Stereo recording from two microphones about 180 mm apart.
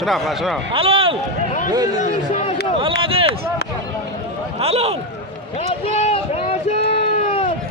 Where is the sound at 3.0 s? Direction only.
30° right (ahead or behind).